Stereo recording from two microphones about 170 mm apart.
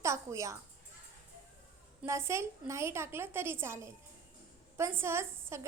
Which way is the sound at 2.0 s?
15° right (ahead or behind).